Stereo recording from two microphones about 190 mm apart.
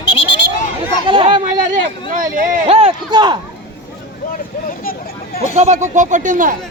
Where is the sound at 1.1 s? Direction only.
25° right (ahead or behind).